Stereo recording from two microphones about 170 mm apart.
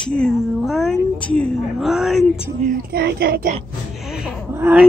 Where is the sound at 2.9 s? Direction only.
65° right (ahead or behind).